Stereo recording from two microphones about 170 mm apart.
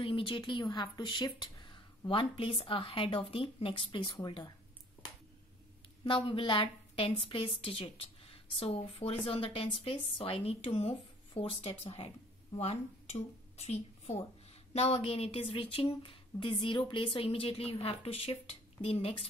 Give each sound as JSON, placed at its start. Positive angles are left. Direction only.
{"t": 0.0, "sound": "speech", "side_deg": 30}
{"t": 6.0, "sound": "a woman's voice", "side_deg": 30}